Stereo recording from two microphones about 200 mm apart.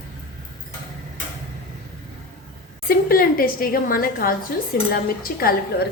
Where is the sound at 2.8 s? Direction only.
45° left (ahead or behind).